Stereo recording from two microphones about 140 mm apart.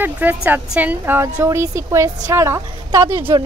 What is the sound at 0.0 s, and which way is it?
A woman's voice, 15° right (ahead or behind).